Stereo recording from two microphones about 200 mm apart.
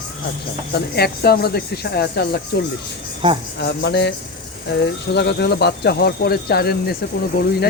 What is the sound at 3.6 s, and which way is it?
Speech, 60° left (ahead or behind).